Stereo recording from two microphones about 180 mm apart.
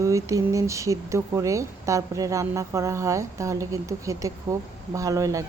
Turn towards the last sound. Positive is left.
turn(degrees=-20)  # may be behind; listen again after turning